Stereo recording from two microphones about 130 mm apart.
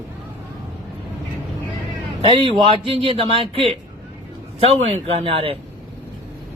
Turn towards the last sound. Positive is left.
turn(degrees=-45)  # may be behind; listen again after turning